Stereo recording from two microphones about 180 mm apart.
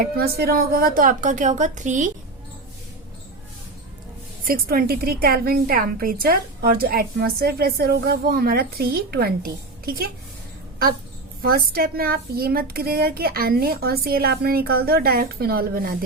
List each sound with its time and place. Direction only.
0.0 s a woman's voice: 60° right (ahead or behind); by 2.1 s 45° right (ahead or behind)
4.4 s a woman's voice: 55° right (ahead or behind)
11.4 s a woman's voice: 55° right (ahead or behind)